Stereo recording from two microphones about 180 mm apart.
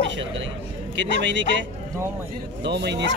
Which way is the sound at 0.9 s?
90° right.